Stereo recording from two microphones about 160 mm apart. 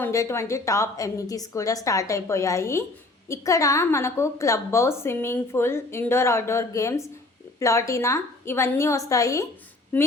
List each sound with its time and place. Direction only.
0.0 s a woman's voice: 20° left (ahead or behind)